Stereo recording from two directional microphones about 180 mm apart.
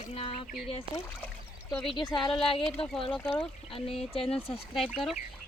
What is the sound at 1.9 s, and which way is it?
Speech, 25° left (ahead or behind).